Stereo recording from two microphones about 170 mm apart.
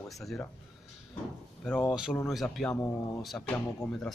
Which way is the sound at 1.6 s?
5° left (ahead or behind).